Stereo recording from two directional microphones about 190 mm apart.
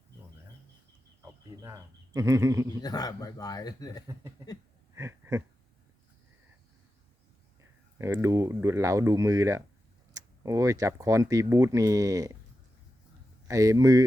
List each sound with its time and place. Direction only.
1.2 s speech: 15° right (ahead or behind)
2.8 s speech: 20° left (ahead or behind)
4.9 s a sound: 15° right (ahead or behind)
7.9 s speech: 15° right (ahead or behind)
13.5 s speech: 20° right (ahead or behind)